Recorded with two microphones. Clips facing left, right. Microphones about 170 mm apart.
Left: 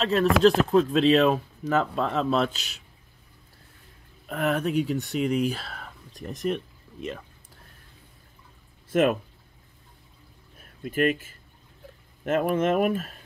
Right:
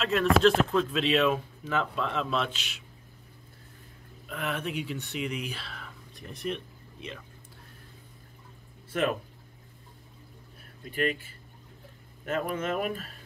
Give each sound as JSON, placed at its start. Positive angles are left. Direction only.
{"t": 0.0, "sound": "speech", "side_deg": 35}
{"t": 4.3, "sound": "speech", "side_deg": 45}
{"t": 10.8, "sound": "speech", "side_deg": 45}